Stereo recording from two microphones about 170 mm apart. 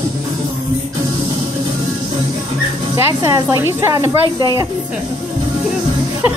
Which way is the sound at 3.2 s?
20° right (ahead or behind).